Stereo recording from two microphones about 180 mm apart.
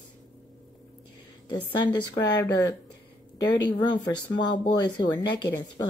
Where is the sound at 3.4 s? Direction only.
75° left (ahead or behind).